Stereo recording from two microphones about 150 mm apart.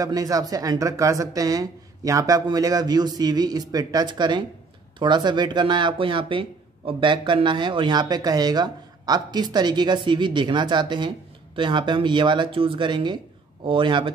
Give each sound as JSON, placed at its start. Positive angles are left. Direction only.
{"t": 0.0, "sound": "speech", "side_deg": -25}